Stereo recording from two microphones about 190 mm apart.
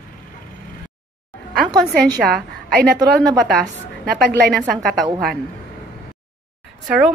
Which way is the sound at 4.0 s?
55° right (ahead or behind).